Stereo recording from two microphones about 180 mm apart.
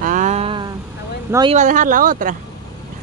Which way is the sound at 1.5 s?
45° right (ahead or behind).